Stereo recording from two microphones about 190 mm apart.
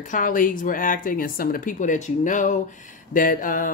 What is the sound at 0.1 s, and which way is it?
Speech, 45° left (ahead or behind).